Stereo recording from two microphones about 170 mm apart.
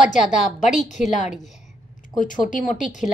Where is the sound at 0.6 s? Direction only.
45° left (ahead or behind).